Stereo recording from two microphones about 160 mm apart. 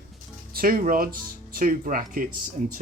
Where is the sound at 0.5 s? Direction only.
60° right (ahead or behind).